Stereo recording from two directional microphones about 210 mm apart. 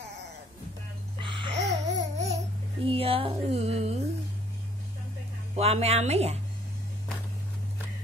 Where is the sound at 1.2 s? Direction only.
25° right (ahead or behind).